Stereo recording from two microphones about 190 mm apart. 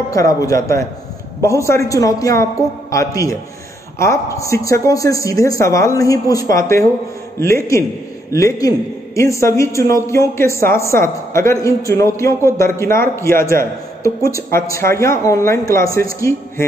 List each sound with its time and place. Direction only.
0.1 s a man's voice: 20° left (ahead or behind)
4.4 s a man's voice: 15° left (ahead or behind)